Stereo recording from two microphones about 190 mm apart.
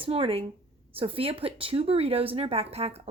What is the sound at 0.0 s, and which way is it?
A woman's voice, 30° right (ahead or behind).